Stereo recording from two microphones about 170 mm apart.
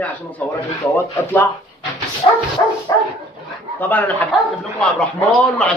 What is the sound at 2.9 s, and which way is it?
Dog, 20° left (ahead or behind).